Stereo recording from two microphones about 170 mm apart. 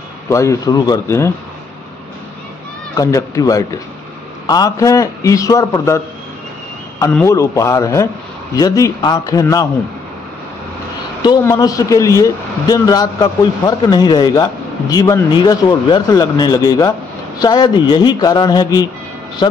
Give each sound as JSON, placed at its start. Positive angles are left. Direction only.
{"t": 0.3, "sound": "a man's voice", "side_deg": 20}
{"t": 3.0, "sound": "a man's voice", "side_deg": 20}
{"t": 7.0, "sound": "a man's voice", "side_deg": 15}
{"t": 11.4, "sound": "a man's voice", "side_deg": 20}